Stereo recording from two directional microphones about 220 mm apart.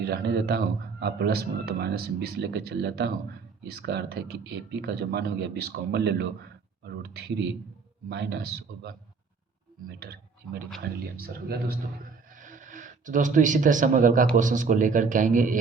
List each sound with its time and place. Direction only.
0.0 s a man's voice: 45° right (ahead or behind)
10.0 s a man's voice: 45° right (ahead or behind)